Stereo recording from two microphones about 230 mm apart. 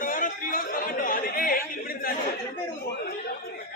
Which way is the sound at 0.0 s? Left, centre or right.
Left.